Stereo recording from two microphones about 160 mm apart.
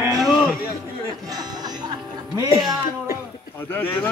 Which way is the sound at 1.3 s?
25° right (ahead or behind).